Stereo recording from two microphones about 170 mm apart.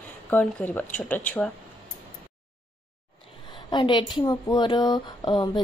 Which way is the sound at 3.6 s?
25° left (ahead or behind).